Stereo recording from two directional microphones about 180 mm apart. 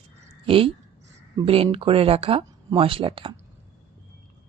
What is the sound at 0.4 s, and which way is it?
Speech, 30° right (ahead or behind).